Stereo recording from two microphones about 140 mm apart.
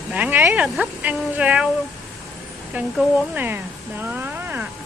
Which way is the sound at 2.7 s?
10° right (ahead or behind).